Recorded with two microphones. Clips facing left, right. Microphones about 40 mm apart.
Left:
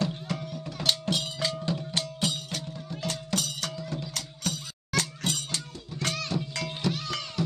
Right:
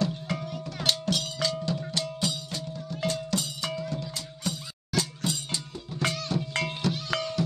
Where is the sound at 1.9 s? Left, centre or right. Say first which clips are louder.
Even; left.